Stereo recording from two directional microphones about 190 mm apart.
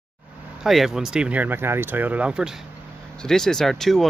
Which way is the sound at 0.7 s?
Centre (ahead or behind).